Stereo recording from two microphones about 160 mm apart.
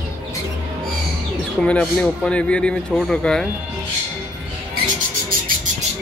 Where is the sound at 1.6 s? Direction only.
5° left (ahead or behind).